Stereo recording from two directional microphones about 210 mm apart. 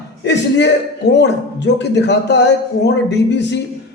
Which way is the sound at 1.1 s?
55° left (ahead or behind).